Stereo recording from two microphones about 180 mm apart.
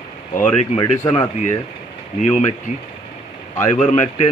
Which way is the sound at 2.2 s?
40° left (ahead or behind).